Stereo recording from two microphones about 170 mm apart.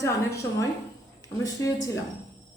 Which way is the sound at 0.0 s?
20° left (ahead or behind).